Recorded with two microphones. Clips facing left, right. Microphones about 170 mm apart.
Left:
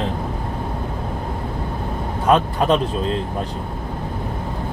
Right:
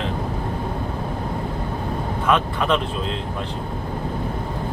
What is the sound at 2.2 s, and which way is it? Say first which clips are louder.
Speech: left 4 dB; 35° left (ahead or behind).